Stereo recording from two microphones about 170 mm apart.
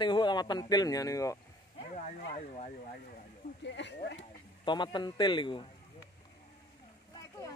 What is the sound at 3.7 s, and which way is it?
Speech, 90° left.